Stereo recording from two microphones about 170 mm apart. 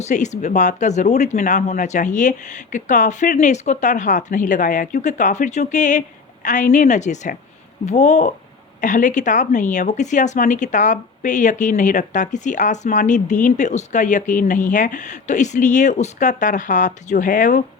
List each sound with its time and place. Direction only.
0.0 s a woman's voice: 45° left (ahead or behind)